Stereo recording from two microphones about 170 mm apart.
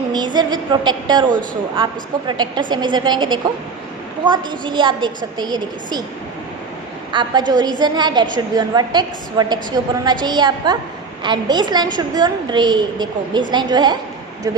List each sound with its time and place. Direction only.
0.1 s a sound: 25° right (ahead or behind)
1.7 s a woman's voice: 30° right (ahead or behind)
7.1 s a woman's voice: 25° right (ahead or behind)